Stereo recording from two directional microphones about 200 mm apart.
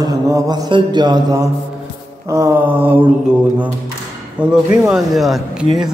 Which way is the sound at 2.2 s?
15° right (ahead or behind).